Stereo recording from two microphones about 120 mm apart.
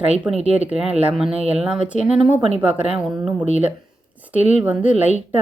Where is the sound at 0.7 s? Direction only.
10° right (ahead or behind).